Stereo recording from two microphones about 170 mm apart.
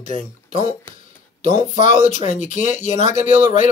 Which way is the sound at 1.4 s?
45° left (ahead or behind).